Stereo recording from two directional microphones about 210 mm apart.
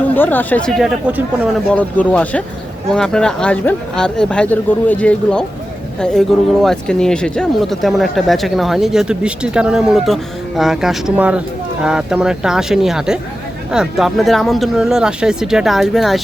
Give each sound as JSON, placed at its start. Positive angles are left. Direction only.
{"t": 0.1, "sound": "speech", "side_deg": 10}
{"t": 1.7, "sound": "speech", "side_deg": 5}